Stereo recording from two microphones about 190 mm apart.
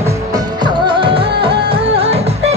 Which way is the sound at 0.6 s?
25° right (ahead or behind).